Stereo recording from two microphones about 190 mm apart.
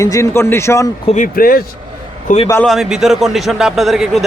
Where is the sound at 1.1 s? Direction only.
45° left (ahead or behind).